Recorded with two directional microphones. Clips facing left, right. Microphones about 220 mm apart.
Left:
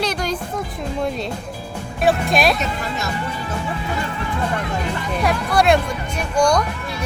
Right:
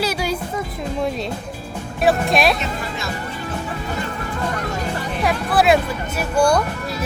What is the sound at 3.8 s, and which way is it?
Music, 45° right (ahead or behind).